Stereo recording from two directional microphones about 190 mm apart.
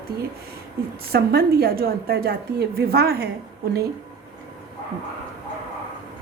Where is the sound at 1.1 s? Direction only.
55° right (ahead or behind).